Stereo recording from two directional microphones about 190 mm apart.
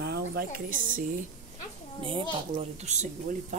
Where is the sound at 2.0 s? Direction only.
25° right (ahead or behind).